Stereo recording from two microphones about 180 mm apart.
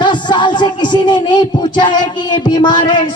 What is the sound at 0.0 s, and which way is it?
Music, 25° left (ahead or behind).